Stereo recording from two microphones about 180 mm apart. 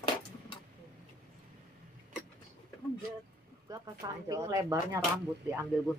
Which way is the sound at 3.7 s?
20° right (ahead or behind).